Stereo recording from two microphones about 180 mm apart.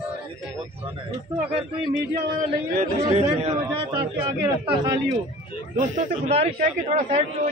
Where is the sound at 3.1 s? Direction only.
35° right (ahead or behind).